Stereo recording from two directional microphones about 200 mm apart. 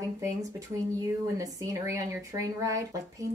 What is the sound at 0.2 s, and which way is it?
Speech, 15° right (ahead or behind).